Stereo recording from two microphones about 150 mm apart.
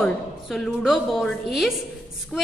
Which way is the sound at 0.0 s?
Centre (ahead or behind).